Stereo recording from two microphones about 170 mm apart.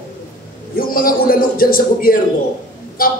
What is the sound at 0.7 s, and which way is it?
A man's voice, 60° left (ahead or behind).